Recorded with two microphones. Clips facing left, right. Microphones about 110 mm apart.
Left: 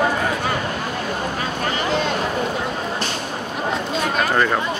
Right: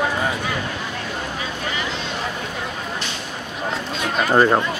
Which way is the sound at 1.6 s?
50° left (ahead or behind).